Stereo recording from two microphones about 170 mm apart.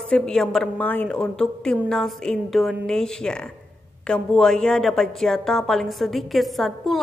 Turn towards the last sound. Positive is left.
turn(degrees=0)  # may be behind; listen again after turning